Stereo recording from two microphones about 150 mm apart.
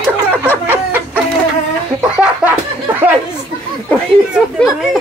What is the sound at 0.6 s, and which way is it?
Chicken, 10° right (ahead or behind).